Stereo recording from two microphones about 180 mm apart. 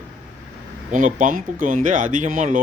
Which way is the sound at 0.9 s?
45° right (ahead or behind).